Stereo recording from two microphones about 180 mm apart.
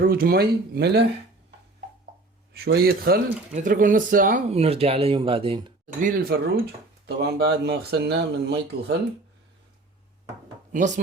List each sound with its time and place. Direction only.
0.0 s speech: 55° right (ahead or behind)
2.5 s speech: 60° right (ahead or behind); by 5.7 s 30° right (ahead or behind)
6.0 s speech: 50° right (ahead or behind)
10.7 s speech: 45° right (ahead or behind)